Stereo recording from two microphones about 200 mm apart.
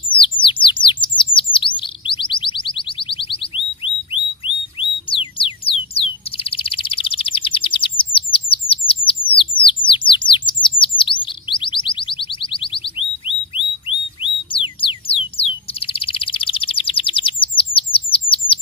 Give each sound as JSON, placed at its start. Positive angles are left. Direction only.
{"t": 0.2, "sound": "bird", "side_deg": 25}
{"t": 1.0, "sound": "chirp", "side_deg": 25}
{"t": 13.8, "sound": "a sound", "side_deg": 25}